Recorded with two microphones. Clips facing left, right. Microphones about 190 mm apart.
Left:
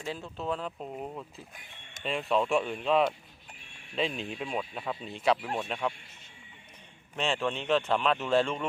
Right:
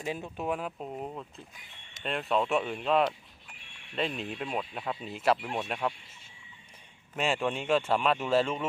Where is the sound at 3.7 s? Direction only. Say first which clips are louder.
Left 1 dB; 40° left (ahead or behind).